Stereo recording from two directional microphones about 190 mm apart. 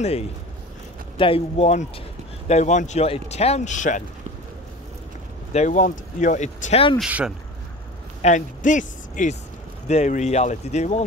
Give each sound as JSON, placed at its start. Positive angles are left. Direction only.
{"t": 1.1, "sound": "speech", "side_deg": 30}
{"t": 5.5, "sound": "speech", "side_deg": 40}
{"t": 7.0, "sound": "speech", "side_deg": -5}
{"t": 8.2, "sound": "speech", "side_deg": 40}